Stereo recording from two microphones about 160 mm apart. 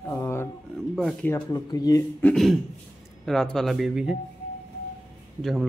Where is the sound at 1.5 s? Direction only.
25° left (ahead or behind).